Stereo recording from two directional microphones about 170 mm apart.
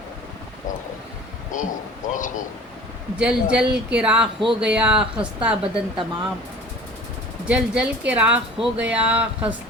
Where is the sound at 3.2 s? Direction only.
5° right (ahead or behind).